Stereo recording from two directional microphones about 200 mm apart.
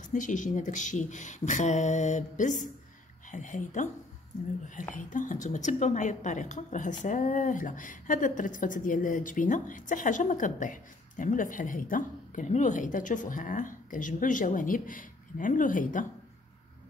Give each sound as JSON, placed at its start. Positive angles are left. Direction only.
{"t": 0.1, "sound": "a woman's voice", "side_deg": 40}
{"t": 4.9, "sound": "a woman's voice", "side_deg": 40}